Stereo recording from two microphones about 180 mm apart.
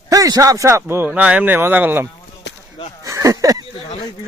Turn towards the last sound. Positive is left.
turn(degrees=-20)  # may be behind; listen again after turning